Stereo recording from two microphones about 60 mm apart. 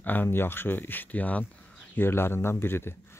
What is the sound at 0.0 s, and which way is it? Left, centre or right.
Speech, left.